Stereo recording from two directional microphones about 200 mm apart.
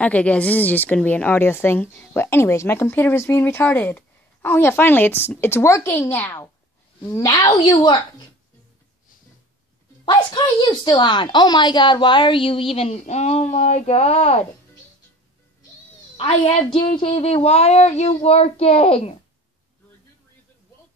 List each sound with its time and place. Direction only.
0.0 s a woman's voice: 5° left (ahead or behind)
10.0 s a woman's voice: 20° left (ahead or behind)
16.2 s a woman's voice: 30° left (ahead or behind)